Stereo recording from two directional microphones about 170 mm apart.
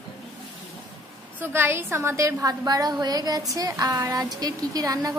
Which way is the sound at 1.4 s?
15° right (ahead or behind).